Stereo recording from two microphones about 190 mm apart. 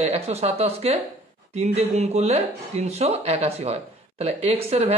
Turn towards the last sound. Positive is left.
turn(degrees=-30)  # may be behind; listen again after turning